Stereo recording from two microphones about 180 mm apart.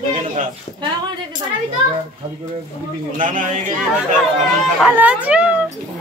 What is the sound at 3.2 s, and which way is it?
A man's voice, 45° right (ahead or behind).